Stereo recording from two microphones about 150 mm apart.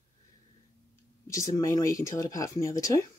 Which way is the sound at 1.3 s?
20° left (ahead or behind).